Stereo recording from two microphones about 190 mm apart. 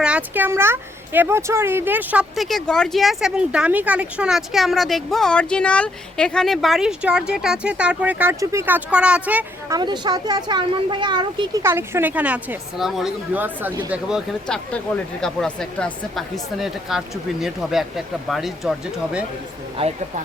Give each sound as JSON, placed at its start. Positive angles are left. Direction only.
{"t": 0.0, "sound": "speech", "side_deg": -5}
{"t": 9.7, "sound": "speech", "side_deg": -20}
{"t": 11.6, "sound": "a woman's voice", "side_deg": -15}
{"t": 13.9, "sound": "speech", "side_deg": 0}
{"t": 19.8, "sound": "speech", "side_deg": -30}